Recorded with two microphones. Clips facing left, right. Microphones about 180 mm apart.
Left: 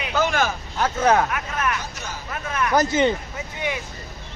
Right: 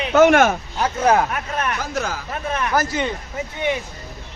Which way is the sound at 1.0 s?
10° right (ahead or behind).